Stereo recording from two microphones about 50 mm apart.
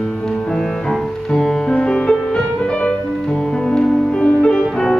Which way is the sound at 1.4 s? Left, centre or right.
Centre.